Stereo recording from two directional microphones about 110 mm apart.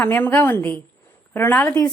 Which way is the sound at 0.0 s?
15° left (ahead or behind).